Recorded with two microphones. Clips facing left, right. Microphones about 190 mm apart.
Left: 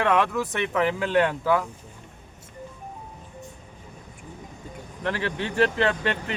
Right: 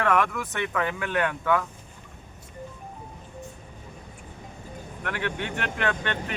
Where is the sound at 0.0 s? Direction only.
25° left (ahead or behind).